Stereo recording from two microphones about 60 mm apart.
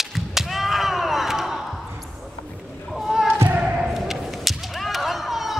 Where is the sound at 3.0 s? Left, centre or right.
Centre.